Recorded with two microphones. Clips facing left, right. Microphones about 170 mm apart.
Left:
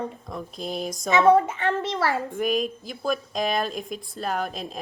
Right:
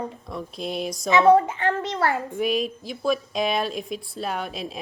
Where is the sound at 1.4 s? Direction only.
25° left (ahead or behind).